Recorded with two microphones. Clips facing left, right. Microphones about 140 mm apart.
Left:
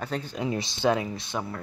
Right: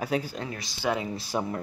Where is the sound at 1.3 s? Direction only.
10° right (ahead or behind).